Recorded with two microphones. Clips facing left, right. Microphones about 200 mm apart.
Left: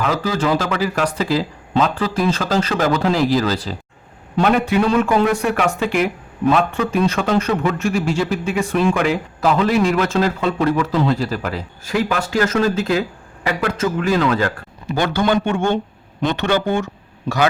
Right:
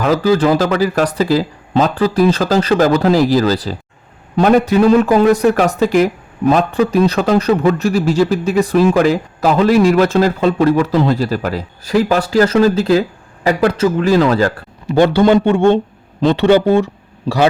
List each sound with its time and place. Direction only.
0.0 s a man's voice: 35° right (ahead or behind)